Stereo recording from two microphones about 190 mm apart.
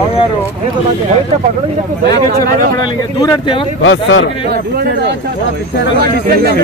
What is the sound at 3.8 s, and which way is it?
Speech, 90° left.